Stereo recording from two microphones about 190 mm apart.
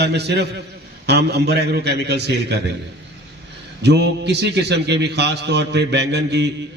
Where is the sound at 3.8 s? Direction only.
60° right (ahead or behind).